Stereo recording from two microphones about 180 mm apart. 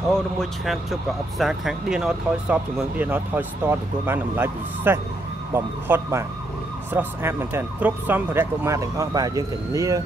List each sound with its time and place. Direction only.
0.1 s speech: centre (ahead or behind); by 10.0 s 20° right (ahead or behind)